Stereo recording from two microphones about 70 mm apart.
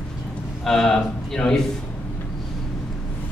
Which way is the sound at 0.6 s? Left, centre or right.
Centre.